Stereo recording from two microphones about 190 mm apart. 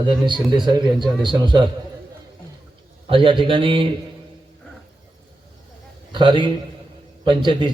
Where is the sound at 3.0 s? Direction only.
25° right (ahead or behind).